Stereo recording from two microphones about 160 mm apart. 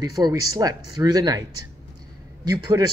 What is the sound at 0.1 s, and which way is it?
Speech, 20° right (ahead or behind).